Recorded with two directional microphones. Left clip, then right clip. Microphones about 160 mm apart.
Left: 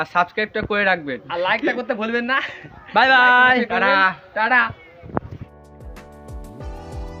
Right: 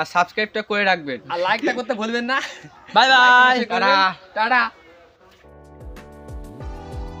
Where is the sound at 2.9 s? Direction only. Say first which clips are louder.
Right 1 dB; 5° left (ahead or behind).